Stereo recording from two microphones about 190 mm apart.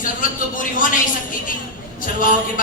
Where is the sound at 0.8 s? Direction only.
45° left (ahead or behind).